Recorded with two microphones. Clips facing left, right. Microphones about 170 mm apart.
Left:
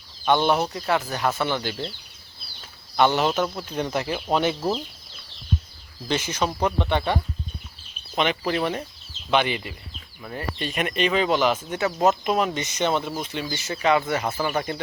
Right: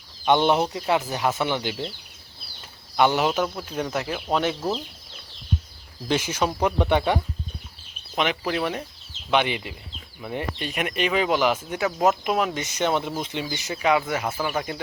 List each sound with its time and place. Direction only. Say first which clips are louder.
0.3 s speech: right 1 dB; 20° right (ahead or behind)
2.9 s speech: even; 10° right (ahead or behind)
6.1 s speech: right 1 dB; 10° right (ahead or behind)
13.7 s speech: left 1 dB; 5° right (ahead or behind)